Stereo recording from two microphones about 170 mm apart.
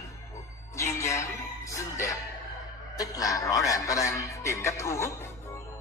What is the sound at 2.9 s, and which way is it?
Speech, 20° left (ahead or behind).